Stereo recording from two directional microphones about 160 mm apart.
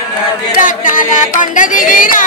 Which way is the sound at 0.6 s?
55° left (ahead or behind).